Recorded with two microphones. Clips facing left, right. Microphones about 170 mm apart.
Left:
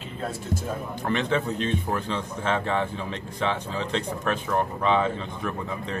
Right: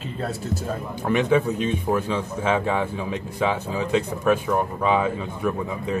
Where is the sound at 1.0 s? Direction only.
10° right (ahead or behind).